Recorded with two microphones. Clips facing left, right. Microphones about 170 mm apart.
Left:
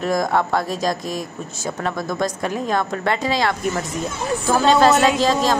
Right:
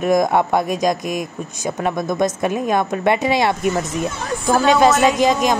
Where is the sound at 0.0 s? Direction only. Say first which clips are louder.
Right 4 dB; 20° right (ahead or behind).